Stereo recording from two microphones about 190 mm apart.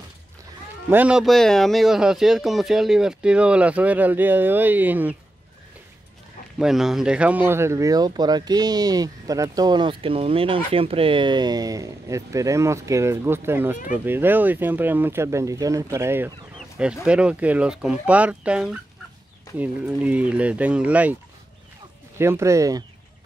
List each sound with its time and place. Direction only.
0.8 s speech: 10° right (ahead or behind)
6.6 s speech: centre (ahead or behind)
16.5 s chicken: centre (ahead or behind)
17.0 s speech: 5° right (ahead or behind)
22.2 s speech: 15° right (ahead or behind)